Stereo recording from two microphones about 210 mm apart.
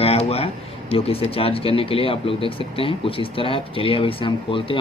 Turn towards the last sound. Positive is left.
turn(degrees=25)  # may be behind; listen again after turning